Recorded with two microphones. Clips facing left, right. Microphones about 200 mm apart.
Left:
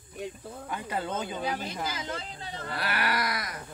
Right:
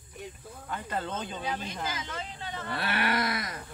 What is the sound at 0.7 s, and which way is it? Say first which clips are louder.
Speech: left 1 dB; 10° left (ahead or behind).